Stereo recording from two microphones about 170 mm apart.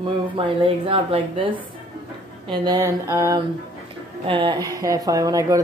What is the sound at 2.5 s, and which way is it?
Speech, 25° right (ahead or behind).